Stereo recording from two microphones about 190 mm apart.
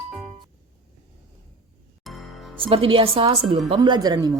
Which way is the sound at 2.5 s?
30° right (ahead or behind).